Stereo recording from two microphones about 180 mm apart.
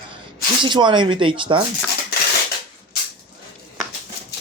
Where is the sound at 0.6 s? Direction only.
25° right (ahead or behind).